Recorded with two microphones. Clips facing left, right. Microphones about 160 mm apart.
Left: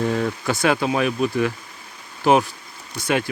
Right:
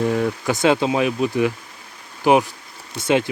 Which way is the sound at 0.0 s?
15° right (ahead or behind).